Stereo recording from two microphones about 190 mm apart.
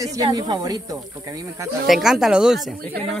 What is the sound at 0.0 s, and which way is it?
Speech, 20° right (ahead or behind).